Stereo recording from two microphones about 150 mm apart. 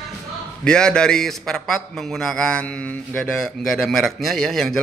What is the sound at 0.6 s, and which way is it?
A man's voice, 5° left (ahead or behind).